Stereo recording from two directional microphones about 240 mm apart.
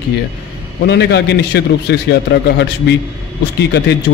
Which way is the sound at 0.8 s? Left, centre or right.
Left.